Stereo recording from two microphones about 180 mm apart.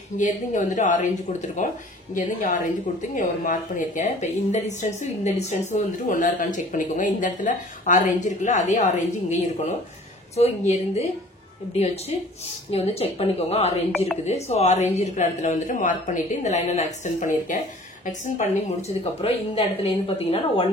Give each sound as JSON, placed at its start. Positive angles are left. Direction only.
{"t": 0.2, "sound": "speech", "side_deg": 45}